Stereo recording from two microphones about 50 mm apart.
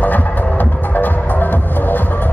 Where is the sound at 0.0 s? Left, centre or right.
Left.